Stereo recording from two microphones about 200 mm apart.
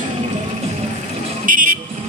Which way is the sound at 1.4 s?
45° right (ahead or behind).